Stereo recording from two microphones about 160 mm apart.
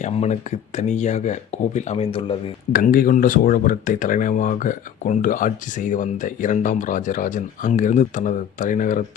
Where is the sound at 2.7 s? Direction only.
60° left (ahead or behind).